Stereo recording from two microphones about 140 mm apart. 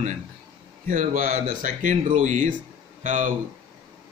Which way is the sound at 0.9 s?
80° right.